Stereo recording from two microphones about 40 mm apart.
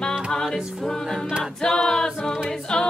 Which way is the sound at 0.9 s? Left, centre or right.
Centre.